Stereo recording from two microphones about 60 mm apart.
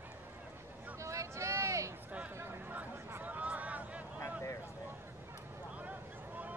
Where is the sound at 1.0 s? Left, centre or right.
Right.